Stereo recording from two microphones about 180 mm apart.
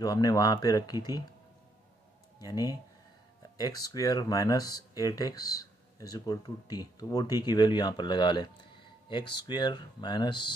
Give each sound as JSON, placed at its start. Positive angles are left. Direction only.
{"t": 0.0, "sound": "speech", "side_deg": 20}
{"t": 2.3, "sound": "speech", "side_deg": 20}